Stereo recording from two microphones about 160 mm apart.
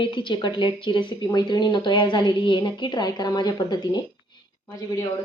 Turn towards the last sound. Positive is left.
turn(degrees=25)  # may be behind; listen again after turning